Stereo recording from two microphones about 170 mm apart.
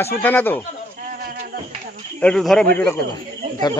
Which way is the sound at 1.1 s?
60° right (ahead or behind).